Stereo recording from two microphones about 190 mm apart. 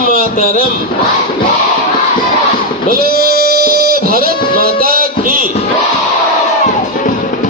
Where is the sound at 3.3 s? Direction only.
55° right (ahead or behind).